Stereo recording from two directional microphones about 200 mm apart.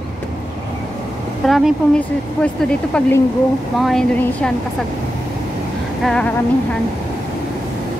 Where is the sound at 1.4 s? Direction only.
Centre (ahead or behind).